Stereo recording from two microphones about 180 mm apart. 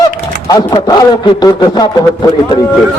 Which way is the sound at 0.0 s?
20° left (ahead or behind).